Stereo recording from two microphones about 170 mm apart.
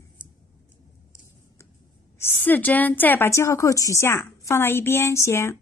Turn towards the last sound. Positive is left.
turn(degrees=15)  # may be behind; listen again after turning